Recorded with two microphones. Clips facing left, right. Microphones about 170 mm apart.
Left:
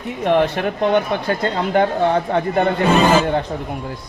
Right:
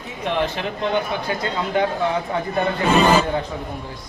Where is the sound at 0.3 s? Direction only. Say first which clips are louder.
Left 6 dB; 50° left (ahead or behind).